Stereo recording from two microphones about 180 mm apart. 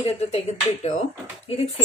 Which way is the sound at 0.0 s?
35° left (ahead or behind).